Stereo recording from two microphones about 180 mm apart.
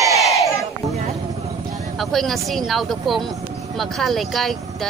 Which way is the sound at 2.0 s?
Centre (ahead or behind).